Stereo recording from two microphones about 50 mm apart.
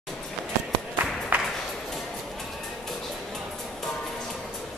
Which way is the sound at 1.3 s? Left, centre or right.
Right.